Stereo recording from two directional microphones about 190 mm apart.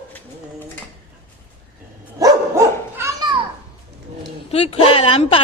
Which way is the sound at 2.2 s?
15° right (ahead or behind).